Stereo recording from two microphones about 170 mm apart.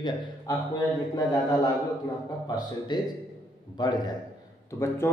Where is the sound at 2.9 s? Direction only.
25° left (ahead or behind).